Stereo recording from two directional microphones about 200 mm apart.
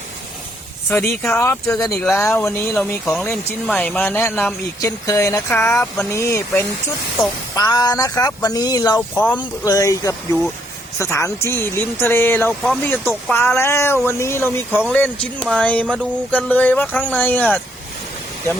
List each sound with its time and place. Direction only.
0.9 s speech: 5° left (ahead or behind)
7.5 s speech: 20° left (ahead or behind)
9.0 s speech: 10° left (ahead or behind)